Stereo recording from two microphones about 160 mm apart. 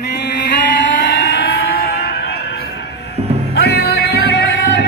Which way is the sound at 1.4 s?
80° left.